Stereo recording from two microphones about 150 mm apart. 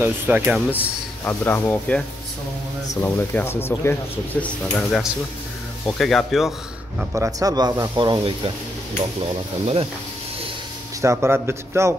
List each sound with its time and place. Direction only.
0.0 s a man's voice: 10° right (ahead or behind)
0.7 s speech: 15° left (ahead or behind)
4.4 s speech: 5° left (ahead or behind)
7.2 s speech: 25° right (ahead or behind)
11.0 s a man's voice: 15° right (ahead or behind)